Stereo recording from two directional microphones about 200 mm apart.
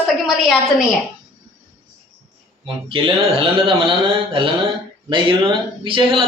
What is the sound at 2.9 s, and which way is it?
A man's voice, 25° right (ahead or behind).